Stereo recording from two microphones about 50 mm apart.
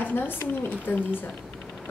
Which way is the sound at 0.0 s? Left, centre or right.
Left.